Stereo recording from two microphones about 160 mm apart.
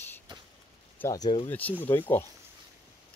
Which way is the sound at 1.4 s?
10° left (ahead or behind).